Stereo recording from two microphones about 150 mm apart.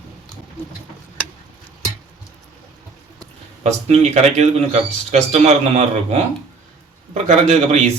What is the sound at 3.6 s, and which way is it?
Speech, 50° right (ahead or behind).